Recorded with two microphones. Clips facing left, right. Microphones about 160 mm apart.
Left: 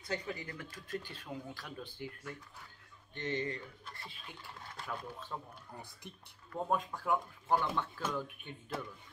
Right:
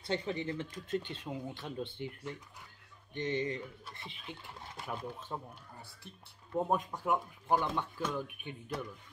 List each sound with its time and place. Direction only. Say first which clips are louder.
0.0 s speech: right 5 dB; 25° right (ahead or behind)
6.5 s speech: right 3 dB; 20° right (ahead or behind)